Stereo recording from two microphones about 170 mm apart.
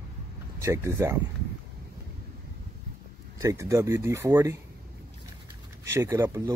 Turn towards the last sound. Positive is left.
turn(degrees=-15)  # may be behind; listen again after turning